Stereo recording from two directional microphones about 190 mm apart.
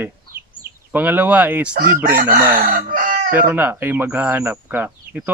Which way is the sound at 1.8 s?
50° right (ahead or behind).